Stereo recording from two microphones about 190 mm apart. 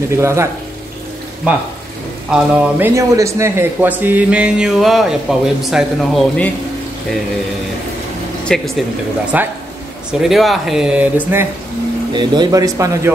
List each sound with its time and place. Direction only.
0.1 s speech: 15° right (ahead or behind)
2.3 s a man's voice: 5° right (ahead or behind)
8.5 s a man's voice: centre (ahead or behind)
12.1 s speech: 25° right (ahead or behind)